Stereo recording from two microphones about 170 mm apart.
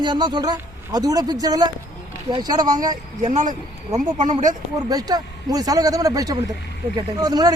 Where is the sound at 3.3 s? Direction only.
50° right (ahead or behind).